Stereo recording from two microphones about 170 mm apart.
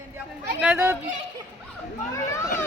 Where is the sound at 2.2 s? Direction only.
15° left (ahead or behind).